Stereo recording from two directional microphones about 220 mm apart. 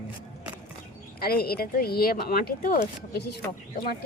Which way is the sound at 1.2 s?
45° left (ahead or behind).